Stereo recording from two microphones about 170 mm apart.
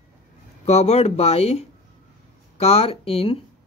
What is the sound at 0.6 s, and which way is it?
A man's voice, 40° left (ahead or behind).